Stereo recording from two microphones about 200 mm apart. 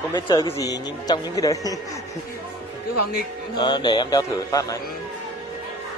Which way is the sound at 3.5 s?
20° left (ahead or behind).